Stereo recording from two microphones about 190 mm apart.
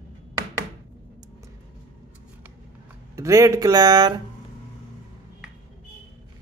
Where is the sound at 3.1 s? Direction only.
15° right (ahead or behind).